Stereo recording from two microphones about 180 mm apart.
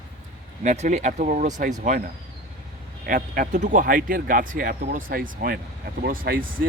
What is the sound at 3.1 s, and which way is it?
Speech, 50° right (ahead or behind).